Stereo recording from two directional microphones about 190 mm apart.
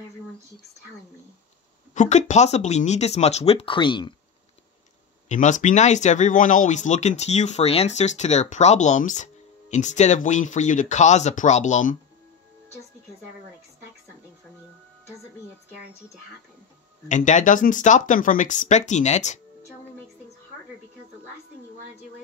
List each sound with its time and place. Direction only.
2.0 s speech: 40° left (ahead or behind)
5.3 s speech: 40° left (ahead or behind)
17.1 s speech: 40° left (ahead or behind)